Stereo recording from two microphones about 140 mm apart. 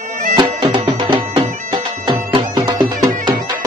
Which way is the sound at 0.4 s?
35° right (ahead or behind).